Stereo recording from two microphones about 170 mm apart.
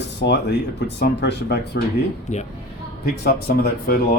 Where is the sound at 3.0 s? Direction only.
65° left (ahead or behind).